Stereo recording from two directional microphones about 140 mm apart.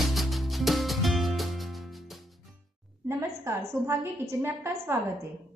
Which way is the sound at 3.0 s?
20° right (ahead or behind).